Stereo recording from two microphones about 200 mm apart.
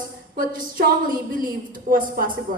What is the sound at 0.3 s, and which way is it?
A woman's voice, 45° right (ahead or behind).